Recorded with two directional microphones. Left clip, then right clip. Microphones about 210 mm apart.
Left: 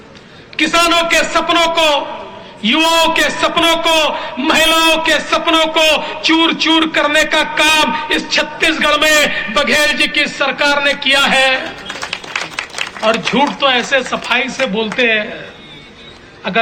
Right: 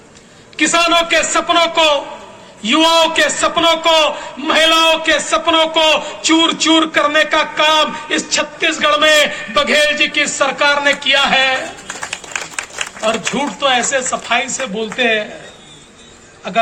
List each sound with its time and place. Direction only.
0.5 s a man's voice: 20° right (ahead or behind)
12.1 s applause: 55° right (ahead or behind)
13.1 s speech: 20° right (ahead or behind)